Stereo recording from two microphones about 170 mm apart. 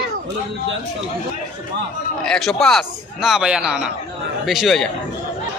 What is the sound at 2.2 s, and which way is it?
A man's voice, 5° left (ahead or behind).